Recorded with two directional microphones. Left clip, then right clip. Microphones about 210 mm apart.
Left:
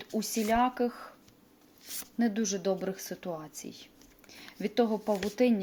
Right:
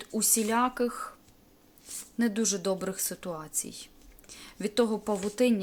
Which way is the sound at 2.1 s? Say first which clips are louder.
Right 2 dB; 15° right (ahead or behind).